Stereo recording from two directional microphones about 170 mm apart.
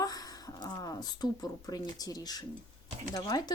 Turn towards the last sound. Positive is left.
turn(degrees=25)  # may be behind; listen again after turning